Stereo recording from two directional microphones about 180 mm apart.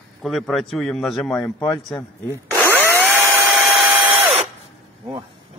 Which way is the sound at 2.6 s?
10° right (ahead or behind).